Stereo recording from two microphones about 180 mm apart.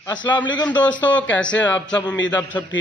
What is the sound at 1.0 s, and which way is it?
Speech, 10° left (ahead or behind).